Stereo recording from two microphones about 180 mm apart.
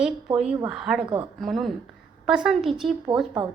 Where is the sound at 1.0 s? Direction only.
30° right (ahead or behind).